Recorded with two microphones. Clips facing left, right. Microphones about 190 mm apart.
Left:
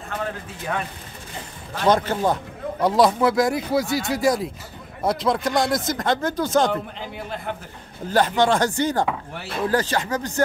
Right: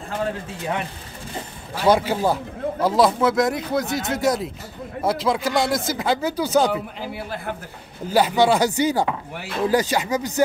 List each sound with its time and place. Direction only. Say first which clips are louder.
0.1 s a man's voice: right 3 dB; 25° right (ahead or behind)
1.8 s speech: right 1 dB; 10° right (ahead or behind)